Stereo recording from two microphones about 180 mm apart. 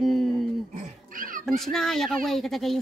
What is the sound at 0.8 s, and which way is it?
Speech, 50° right (ahead or behind).